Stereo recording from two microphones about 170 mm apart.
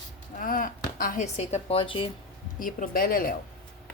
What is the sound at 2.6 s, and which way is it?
Speech, 50° left (ahead or behind).